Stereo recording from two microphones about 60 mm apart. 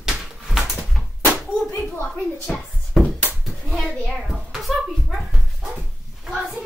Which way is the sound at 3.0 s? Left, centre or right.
Centre.